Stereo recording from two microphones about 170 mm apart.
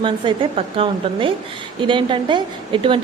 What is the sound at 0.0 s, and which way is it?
A woman's voice, 30° right (ahead or behind).